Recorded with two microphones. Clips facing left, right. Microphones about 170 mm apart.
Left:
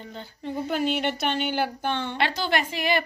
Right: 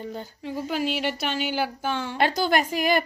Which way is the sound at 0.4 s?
5° right (ahead or behind).